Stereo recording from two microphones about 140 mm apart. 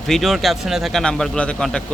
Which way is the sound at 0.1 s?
Centre (ahead or behind).